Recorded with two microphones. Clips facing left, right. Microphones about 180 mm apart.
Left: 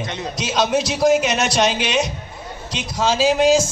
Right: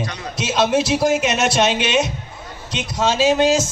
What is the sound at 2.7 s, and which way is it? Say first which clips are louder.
A man's voice: right 1 dB; 25° right (ahead or behind).